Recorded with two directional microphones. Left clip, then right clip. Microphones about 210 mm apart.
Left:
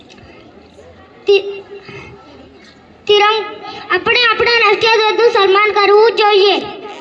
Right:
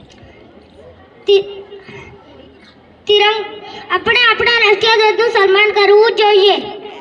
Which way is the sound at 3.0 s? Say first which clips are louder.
Left 1 dB; 20° right (ahead or behind).